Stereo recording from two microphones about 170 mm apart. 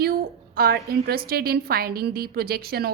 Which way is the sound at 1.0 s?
65° right (ahead or behind).